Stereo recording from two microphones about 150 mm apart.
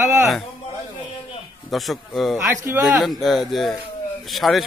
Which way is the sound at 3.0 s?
Centre (ahead or behind).